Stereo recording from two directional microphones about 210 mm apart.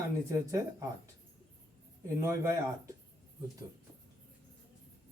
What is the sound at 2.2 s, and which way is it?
Speech, 15° right (ahead or behind).